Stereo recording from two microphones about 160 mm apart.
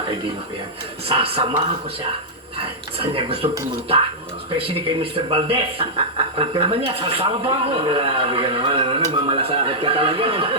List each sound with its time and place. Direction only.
1.0 s speech: 35° right (ahead or behind)